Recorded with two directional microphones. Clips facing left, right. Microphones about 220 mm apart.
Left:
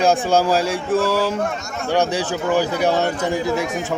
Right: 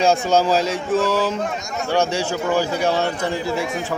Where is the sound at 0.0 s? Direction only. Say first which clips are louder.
Even; 10° left (ahead or behind).